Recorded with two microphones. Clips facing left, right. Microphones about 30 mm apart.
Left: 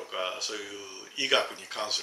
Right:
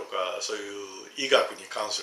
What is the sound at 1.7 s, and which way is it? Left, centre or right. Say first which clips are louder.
Speech: right 3 dB; left.